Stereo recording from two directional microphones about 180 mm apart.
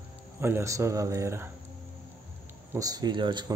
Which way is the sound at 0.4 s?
15° right (ahead or behind).